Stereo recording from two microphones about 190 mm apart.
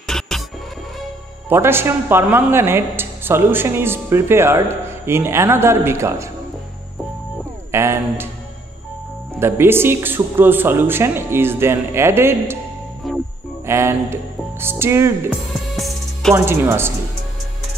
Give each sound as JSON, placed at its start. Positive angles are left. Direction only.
{"t": 0.0, "sound": "music", "side_deg": 0}
{"t": 1.5, "sound": "speech", "side_deg": -10}
{"t": 7.7, "sound": "speech", "side_deg": -15}
{"t": 9.4, "sound": "speech", "side_deg": -10}
{"t": 13.0, "sound": "music", "side_deg": 0}
{"t": 13.7, "sound": "speech", "side_deg": -15}
{"t": 15.5, "sound": "music", "side_deg": 0}
{"t": 16.3, "sound": "speech", "side_deg": -10}